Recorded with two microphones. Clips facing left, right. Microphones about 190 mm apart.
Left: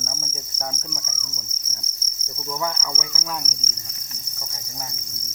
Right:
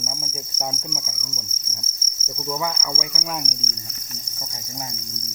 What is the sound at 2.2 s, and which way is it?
Cricket, 15° right (ahead or behind).